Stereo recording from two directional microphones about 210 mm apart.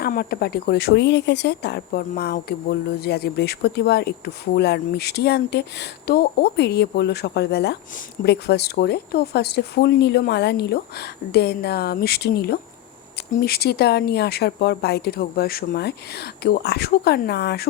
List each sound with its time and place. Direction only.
0.0 s speech: 45° left (ahead or behind)